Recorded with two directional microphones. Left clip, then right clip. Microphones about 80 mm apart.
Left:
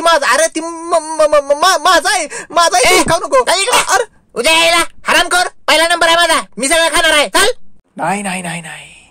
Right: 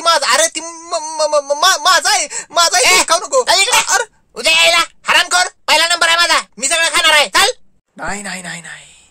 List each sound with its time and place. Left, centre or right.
0.0 s speech: left
0.9 s speech: left
1.4 s speech: left
1.7 s speech: left
3.1 s speech: left
4.4 s speech: left
6.6 s a man's voice: left
8.0 s speech: left